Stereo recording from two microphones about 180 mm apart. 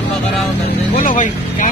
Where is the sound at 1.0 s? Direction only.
45° left (ahead or behind).